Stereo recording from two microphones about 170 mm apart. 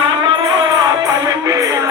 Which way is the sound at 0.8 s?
20° right (ahead or behind).